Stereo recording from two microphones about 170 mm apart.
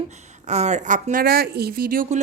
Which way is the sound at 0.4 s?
40° right (ahead or behind).